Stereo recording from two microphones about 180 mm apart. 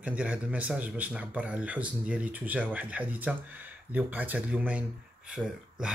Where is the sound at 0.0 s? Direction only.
5° right (ahead or behind).